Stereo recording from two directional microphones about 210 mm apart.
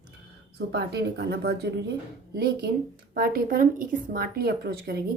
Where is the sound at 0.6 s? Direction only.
50° right (ahead or behind).